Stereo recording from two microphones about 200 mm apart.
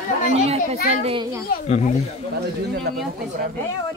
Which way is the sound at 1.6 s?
35° left (ahead or behind).